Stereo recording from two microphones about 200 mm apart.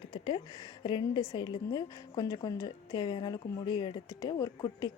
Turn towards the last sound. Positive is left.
turn(degrees=20)  # may be behind; listen again after turning